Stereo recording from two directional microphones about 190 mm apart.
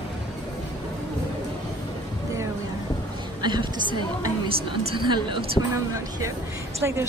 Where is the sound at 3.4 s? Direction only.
25° right (ahead or behind).